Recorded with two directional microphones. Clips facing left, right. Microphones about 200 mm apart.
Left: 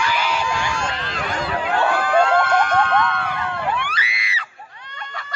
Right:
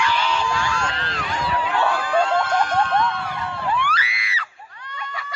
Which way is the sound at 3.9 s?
20° left (ahead or behind).